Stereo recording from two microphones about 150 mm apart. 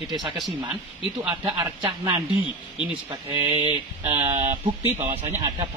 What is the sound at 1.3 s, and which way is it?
Speech, 30° right (ahead or behind).